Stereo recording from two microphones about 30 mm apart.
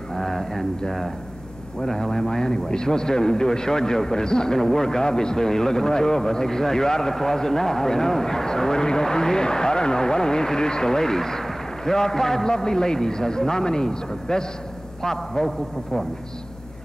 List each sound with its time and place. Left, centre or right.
0.1 s a sound: centre
1.9 s a man's voice: centre
15.4 s a man's voice: centre